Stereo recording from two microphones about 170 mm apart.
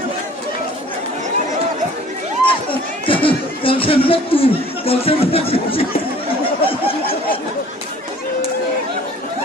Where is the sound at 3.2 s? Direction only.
30° left (ahead or behind).